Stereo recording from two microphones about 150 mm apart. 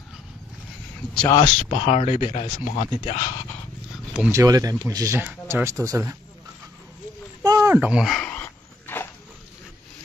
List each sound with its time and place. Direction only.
1.4 s speech: 55° left (ahead or behind)
3.2 s dog: 25° left (ahead or behind)
4.3 s speech: 20° right (ahead or behind)
7.4 s a sound: 20° right (ahead or behind)
7.8 s dog: 5° right (ahead or behind); by 9.0 s 10° left (ahead or behind)